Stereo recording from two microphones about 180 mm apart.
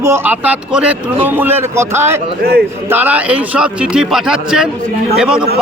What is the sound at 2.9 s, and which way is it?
Speech, 10° right (ahead or behind).